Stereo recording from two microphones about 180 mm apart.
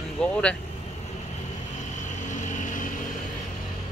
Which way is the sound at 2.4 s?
45° left (ahead or behind).